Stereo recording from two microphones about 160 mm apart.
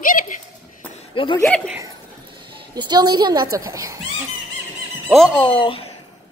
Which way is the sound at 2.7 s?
25° right (ahead or behind).